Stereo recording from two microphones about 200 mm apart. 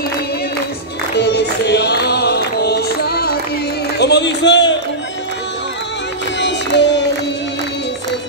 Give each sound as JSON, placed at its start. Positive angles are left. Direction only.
{"t": 1.1, "sound": "music", "side_deg": 55}
{"t": 4.0, "sound": "a sound", "side_deg": 60}
{"t": 6.4, "sound": "music", "side_deg": 60}